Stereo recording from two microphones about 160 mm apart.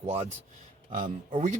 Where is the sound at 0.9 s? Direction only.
55° right (ahead or behind).